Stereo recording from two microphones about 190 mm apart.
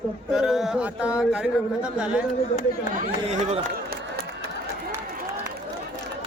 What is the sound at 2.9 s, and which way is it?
Speech, 35° right (ahead or behind).